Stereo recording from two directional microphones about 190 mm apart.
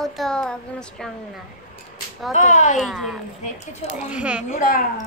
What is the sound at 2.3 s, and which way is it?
Speech, 40° left (ahead or behind).